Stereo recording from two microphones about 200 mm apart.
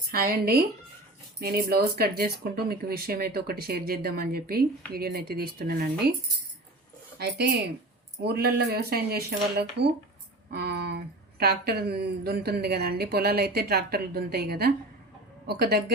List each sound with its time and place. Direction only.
0.1 s speech: 50° right (ahead or behind)
7.2 s speech: 50° right (ahead or behind)